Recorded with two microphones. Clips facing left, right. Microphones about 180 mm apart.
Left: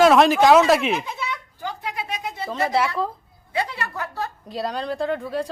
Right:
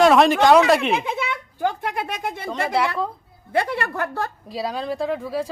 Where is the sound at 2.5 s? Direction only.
Centre (ahead or behind).